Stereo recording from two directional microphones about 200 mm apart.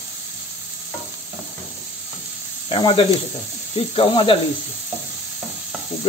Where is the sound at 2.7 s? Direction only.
25° left (ahead or behind).